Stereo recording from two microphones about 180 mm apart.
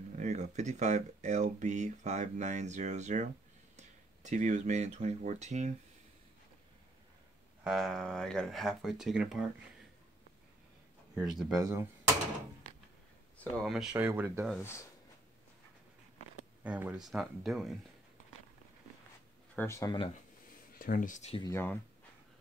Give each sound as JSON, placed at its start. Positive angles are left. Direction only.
{"t": 0.1, "sound": "speech", "side_deg": -40}
{"t": 7.6, "sound": "speech", "side_deg": 0}
{"t": 11.1, "sound": "speech", "side_deg": -5}
{"t": 11.6, "sound": "speech", "side_deg": -15}
{"t": 13.4, "sound": "speech", "side_deg": 0}
{"t": 14.0, "sound": "speech", "side_deg": -10}
{"t": 14.6, "sound": "speech", "side_deg": 15}
{"t": 16.6, "sound": "speech", "side_deg": -5}
{"t": 19.5, "sound": "speech", "side_deg": 15}
{"t": 20.8, "sound": "speech", "side_deg": 50}
{"t": 21.4, "sound": "speech", "side_deg": 15}